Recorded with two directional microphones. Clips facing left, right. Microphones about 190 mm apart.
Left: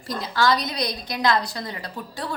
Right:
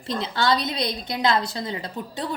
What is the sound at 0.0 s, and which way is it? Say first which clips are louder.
A woman's voice: left 1 dB; 25° right (ahead or behind).